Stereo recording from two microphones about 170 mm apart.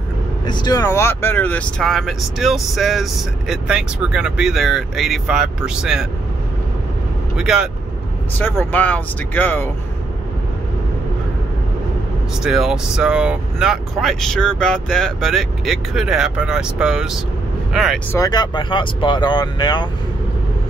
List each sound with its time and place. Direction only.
0.5 s speech: 25° left (ahead or behind); by 6.0 s 5° right (ahead or behind)
7.3 s speech: 5° right (ahead or behind)
8.4 s speech: 10° left (ahead or behind)
12.4 s speech: 5° right (ahead or behind)
18.1 s speech: 20° left (ahead or behind)